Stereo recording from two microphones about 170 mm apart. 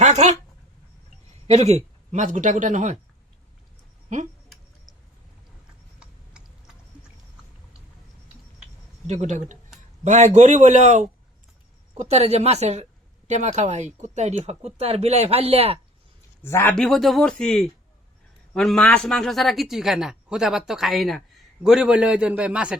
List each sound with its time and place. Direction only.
0.0 s a sound: 45° right (ahead or behind)
1.5 s speech: 40° right (ahead or behind)
9.0 s a woman's voice: 45° right (ahead or behind)
16.4 s a man's voice: 15° left (ahead or behind)
16.7 s a man's voice: centre (ahead or behind)